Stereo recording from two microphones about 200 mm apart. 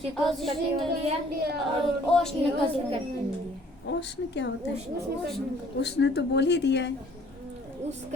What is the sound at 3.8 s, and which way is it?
Speech, 60° left (ahead or behind).